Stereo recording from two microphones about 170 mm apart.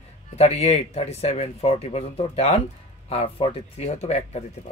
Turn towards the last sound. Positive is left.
turn(degrees=40)  # may be behind; listen again after turning